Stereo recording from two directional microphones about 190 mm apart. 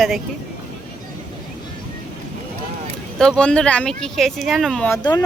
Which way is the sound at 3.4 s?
5° left (ahead or behind).